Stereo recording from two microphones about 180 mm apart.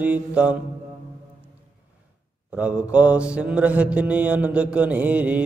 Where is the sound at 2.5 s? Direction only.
5° right (ahead or behind).